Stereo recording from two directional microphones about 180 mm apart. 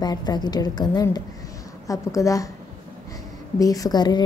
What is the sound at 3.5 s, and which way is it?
Speech, 20° left (ahead or behind).